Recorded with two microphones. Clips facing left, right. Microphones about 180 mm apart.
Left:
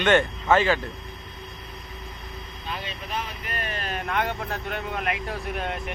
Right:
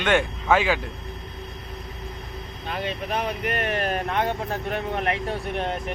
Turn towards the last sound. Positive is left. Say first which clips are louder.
# right 3 dB
turn(degrees=-30)  # may be behind; listen again after turning